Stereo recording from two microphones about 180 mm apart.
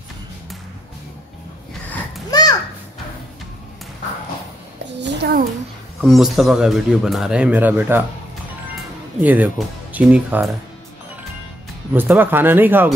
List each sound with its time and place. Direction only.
2.3 s children playing: 20° left (ahead or behind)
5.0 s a sound: 60° right (ahead or behind)
5.9 s a man's voice: centre (ahead or behind)
11.9 s speech: 10° right (ahead or behind)